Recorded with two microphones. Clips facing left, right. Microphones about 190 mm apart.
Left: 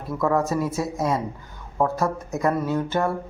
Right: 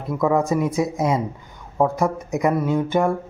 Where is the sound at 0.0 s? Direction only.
15° right (ahead or behind).